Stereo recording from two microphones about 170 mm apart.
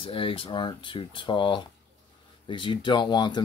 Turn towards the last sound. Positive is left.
turn(degrees=25)  # may be behind; listen again after turning